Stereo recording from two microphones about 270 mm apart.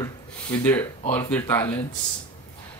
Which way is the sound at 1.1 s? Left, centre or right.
Centre.